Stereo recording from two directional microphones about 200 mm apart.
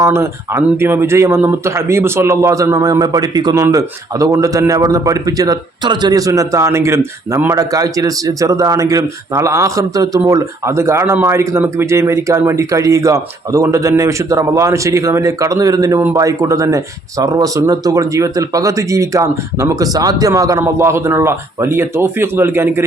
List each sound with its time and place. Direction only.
0.0 s speech: 15° right (ahead or behind)